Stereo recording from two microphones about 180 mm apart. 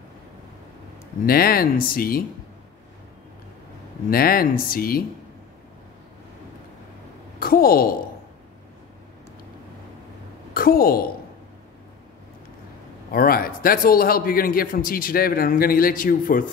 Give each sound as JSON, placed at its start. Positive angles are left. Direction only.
{"t": 1.2, "sound": "speech", "side_deg": 55}
{"t": 4.1, "sound": "speech", "side_deg": 55}
{"t": 7.3, "sound": "a woman's voice", "side_deg": 55}
{"t": 10.5, "sound": "a woman's voice", "side_deg": 55}
{"t": 13.1, "sound": "a man's voice", "side_deg": 55}